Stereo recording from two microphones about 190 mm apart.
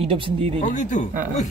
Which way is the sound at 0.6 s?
40° left (ahead or behind).